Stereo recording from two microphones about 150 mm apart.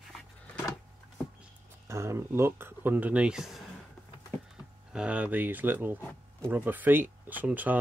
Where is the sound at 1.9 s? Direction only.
20° right (ahead or behind); by 3.6 s centre (ahead or behind).